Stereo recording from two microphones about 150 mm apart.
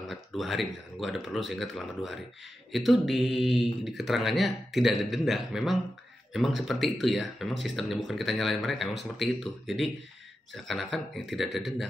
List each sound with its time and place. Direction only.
0.1 s speech: centre (ahead or behind)